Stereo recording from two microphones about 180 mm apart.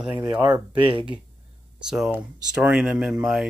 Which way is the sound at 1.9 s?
Centre (ahead or behind).